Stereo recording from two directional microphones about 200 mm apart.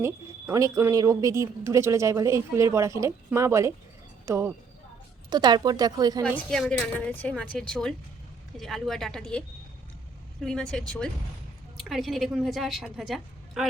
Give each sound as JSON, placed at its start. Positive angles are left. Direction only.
{"t": 0.0, "sound": "a woman's voice", "side_deg": -15}
{"t": 6.5, "sound": "a woman's voice", "side_deg": 5}
{"t": 10.4, "sound": "a woman's voice", "side_deg": 5}